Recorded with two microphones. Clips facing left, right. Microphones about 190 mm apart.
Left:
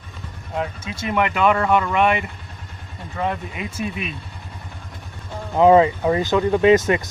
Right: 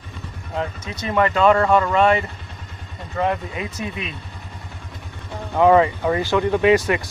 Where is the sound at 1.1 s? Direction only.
15° left (ahead or behind).